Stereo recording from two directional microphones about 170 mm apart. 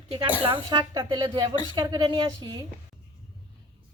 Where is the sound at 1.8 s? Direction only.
25° right (ahead or behind).